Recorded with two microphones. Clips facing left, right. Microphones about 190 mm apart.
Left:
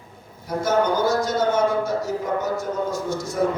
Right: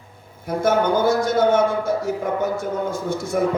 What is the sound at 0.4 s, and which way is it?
A man's voice, 55° right (ahead or behind).